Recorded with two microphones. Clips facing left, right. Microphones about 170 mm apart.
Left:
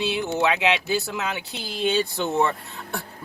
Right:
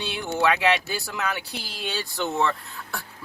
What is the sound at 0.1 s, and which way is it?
Speech, 20° left (ahead or behind).